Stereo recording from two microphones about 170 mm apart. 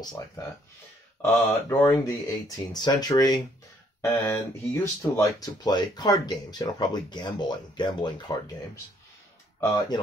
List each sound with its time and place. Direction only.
1.2 s speech: 20° left (ahead or behind)